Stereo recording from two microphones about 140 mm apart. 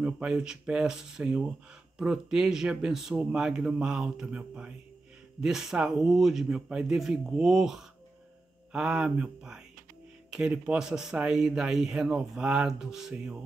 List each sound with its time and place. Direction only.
0.0 s speech: 5° right (ahead or behind)